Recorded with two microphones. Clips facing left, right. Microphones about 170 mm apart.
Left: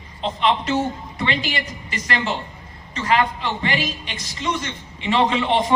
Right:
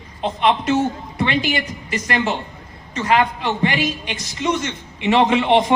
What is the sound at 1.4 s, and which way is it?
Speech, 55° right (ahead or behind).